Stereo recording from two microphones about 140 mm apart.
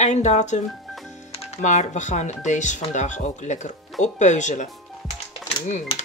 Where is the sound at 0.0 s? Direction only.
55° left (ahead or behind).